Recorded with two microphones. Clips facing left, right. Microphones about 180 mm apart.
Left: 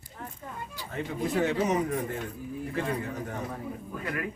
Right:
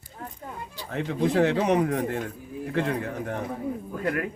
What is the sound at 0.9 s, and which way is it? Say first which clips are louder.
Speech: right 6 dB; 75° right (ahead or behind).